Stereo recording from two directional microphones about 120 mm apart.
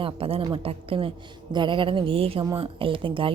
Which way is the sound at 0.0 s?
50° right (ahead or behind).